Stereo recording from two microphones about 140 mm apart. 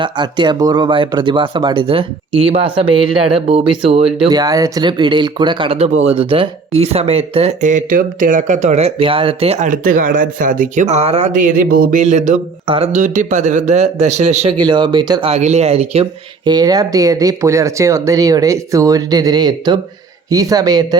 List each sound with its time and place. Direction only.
0.0 s speech: 35° right (ahead or behind)
4.3 s speech: 25° right (ahead or behind); by 9.6 s 45° right (ahead or behind)
9.6 s speech: 70° right (ahead or behind); by 11.3 s 50° right (ahead or behind)
11.3 s speech: 70° right (ahead or behind)
12.6 s speech: 40° right (ahead or behind)
12.9 s speech: 65° right (ahead or behind)
14.6 s speech: 35° right (ahead or behind)
15.2 s speech: 50° right (ahead or behind)
16.5 s speech: 30° right (ahead or behind)